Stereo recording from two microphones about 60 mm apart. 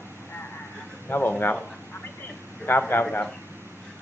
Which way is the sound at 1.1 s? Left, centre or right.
Left.